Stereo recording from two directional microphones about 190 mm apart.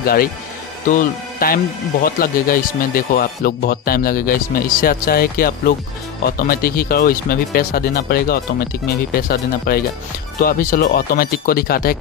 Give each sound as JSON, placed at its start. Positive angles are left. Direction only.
{"t": 0.0, "sound": "speech", "side_deg": 50}